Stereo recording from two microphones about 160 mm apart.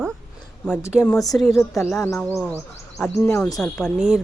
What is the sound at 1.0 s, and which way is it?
A man's voice, 10° left (ahead or behind).